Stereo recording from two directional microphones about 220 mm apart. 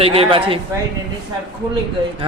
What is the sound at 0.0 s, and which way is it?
Speech, 25° right (ahead or behind).